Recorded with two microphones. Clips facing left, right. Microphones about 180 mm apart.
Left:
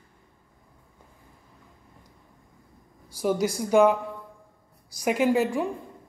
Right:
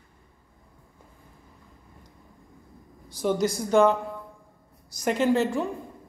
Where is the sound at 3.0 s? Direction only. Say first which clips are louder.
Even; 10° left (ahead or behind).